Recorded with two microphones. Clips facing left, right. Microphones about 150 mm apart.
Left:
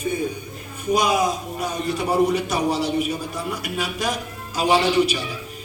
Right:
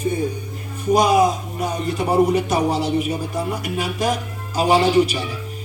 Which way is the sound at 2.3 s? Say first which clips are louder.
Right 3 dB; 55° right (ahead or behind).